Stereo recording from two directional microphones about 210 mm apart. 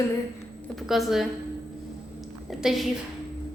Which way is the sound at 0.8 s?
Centre (ahead or behind).